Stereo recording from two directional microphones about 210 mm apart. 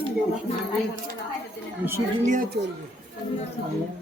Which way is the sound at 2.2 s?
40° right (ahead or behind).